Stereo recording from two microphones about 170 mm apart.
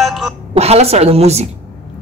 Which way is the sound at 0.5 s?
40° right (ahead or behind).